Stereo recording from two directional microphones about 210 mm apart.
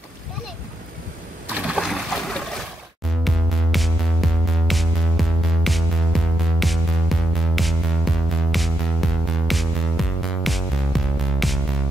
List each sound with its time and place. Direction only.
1.7 s boat: centre (ahead or behind)
3.3 s music: centre (ahead or behind)